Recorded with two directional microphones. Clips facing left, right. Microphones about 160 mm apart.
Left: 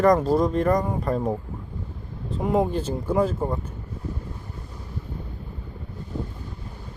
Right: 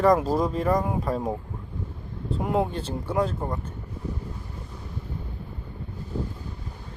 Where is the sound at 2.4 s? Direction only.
Centre (ahead or behind).